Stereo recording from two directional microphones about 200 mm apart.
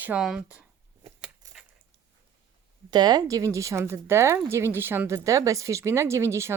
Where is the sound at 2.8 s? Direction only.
20° right (ahead or behind).